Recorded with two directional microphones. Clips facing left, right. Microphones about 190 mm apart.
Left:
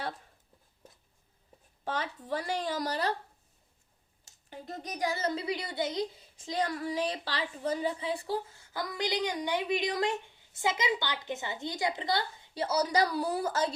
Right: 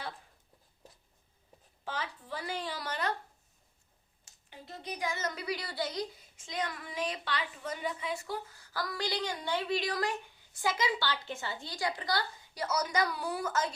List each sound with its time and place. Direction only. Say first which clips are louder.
1.8 s speech: left 4 dB; 45° left (ahead or behind)
4.3 s a woman's voice: left 6 dB; 45° left (ahead or behind); by 6.2 s 20° left (ahead or behind)
6.3 s a woman's voice: left 6 dB; 35° left (ahead or behind)